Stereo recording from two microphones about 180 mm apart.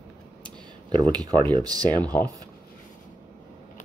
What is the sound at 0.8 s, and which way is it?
Speech, 25° right (ahead or behind).